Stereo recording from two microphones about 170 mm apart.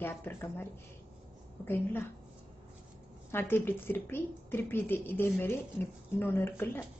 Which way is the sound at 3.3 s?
15° left (ahead or behind).